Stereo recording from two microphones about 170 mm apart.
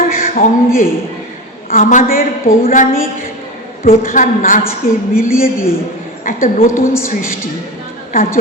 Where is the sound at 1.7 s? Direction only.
55° left (ahead or behind).